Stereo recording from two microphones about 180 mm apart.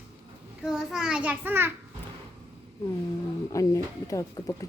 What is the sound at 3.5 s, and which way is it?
Speech, 20° left (ahead or behind).